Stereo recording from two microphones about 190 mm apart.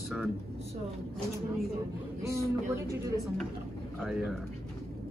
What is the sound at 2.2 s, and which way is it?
Speech, 15° right (ahead or behind).